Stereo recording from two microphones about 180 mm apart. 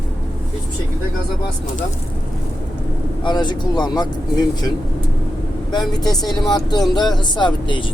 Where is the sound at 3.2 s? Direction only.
25° left (ahead or behind).